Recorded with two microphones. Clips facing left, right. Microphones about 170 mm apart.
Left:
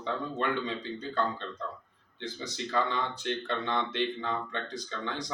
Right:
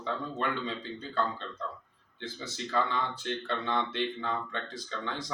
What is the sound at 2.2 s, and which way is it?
Speech, 20° left (ahead or behind).